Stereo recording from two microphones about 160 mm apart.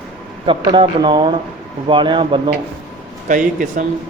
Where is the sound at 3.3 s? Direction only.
55° right (ahead or behind).